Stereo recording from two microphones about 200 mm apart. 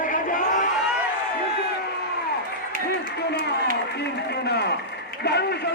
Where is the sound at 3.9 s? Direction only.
55° left (ahead or behind).